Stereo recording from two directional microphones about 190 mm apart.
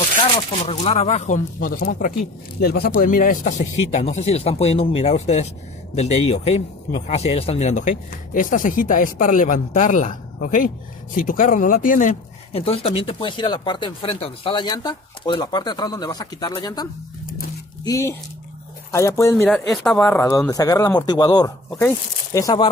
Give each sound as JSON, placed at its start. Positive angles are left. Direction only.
{"t": 0.7, "sound": "speech", "side_deg": 30}
{"t": 19.5, "sound": "speech", "side_deg": 0}
{"t": 20.2, "sound": "speech", "side_deg": 15}